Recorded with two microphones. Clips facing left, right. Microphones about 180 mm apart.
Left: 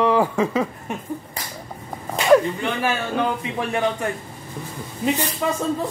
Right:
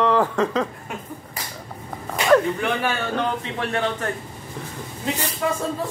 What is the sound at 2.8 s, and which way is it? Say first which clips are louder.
Speech: left 2 dB; 5° left (ahead or behind).